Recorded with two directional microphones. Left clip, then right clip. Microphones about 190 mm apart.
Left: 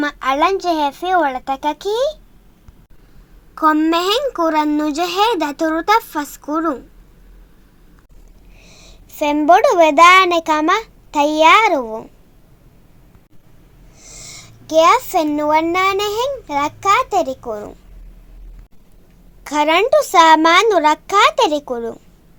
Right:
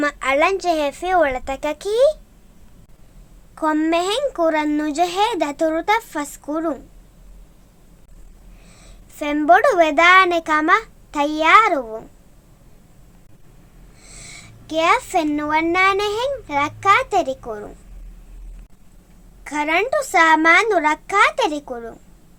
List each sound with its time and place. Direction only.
0.0 s speech: centre (ahead or behind)
3.5 s speech: 5° left (ahead or behind)
8.6 s a woman's voice: 20° left (ahead or behind)
14.0 s a child's voice: 25° left (ahead or behind)
19.5 s speech: 35° left (ahead or behind)